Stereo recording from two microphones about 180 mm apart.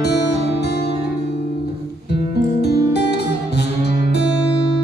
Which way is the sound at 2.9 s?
65° left (ahead or behind).